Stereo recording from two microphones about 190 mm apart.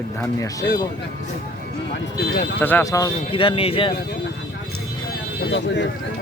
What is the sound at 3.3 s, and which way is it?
Speech, 30° left (ahead or behind).